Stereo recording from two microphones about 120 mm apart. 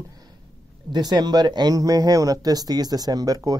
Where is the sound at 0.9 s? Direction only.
35° right (ahead or behind).